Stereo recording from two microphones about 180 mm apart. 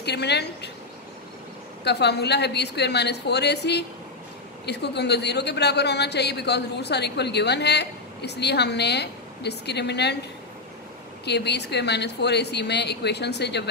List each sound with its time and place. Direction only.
0.0 s a man's voice: 70° left (ahead or behind)
1.9 s a man's voice: 70° left (ahead or behind)
11.2 s a man's voice: 70° left (ahead or behind)